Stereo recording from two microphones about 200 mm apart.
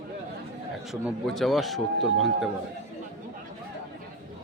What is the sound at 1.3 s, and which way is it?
Speech, centre (ahead or behind).